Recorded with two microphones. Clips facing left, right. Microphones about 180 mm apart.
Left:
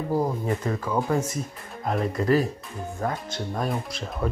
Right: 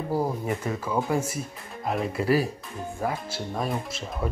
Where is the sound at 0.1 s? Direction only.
10° right (ahead or behind).